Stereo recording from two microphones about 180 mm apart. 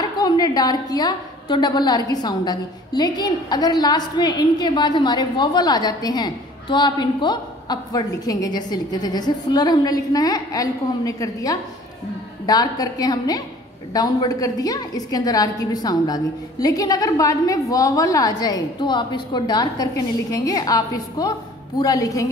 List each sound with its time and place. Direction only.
0.2 s a woman's voice: 20° left (ahead or behind)